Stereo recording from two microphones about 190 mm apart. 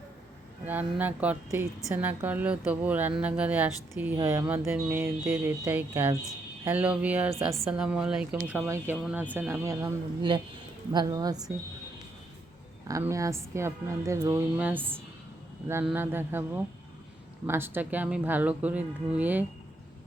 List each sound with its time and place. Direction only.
0.6 s a woman's voice: 10° right (ahead or behind)
10.2 s speech: 25° right (ahead or behind)
12.9 s speech: 15° right (ahead or behind)
17.4 s speech: 10° right (ahead or behind)